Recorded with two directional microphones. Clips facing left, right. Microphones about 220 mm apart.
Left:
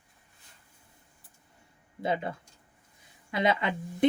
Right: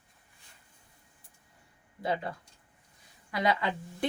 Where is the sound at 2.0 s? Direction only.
25° left (ahead or behind).